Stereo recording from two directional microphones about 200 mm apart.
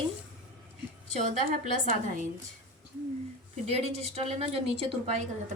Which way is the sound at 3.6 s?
30° right (ahead or behind).